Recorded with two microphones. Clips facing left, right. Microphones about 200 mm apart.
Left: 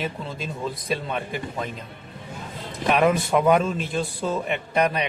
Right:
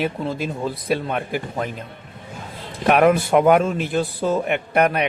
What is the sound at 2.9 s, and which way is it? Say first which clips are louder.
Speech: right 5 dB; 55° right (ahead or behind).